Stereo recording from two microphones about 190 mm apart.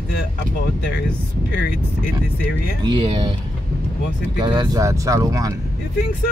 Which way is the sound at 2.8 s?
25° right (ahead or behind).